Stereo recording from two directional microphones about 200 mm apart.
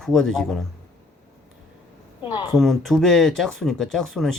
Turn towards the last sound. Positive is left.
turn(degrees=0)  # may be behind; listen again after turning